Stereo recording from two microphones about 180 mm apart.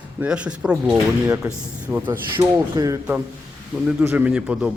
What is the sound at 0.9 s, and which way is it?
Speech, 15° right (ahead or behind).